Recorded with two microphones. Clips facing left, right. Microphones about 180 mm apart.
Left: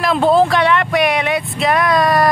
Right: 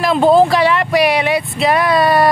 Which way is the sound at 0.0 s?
Centre (ahead or behind).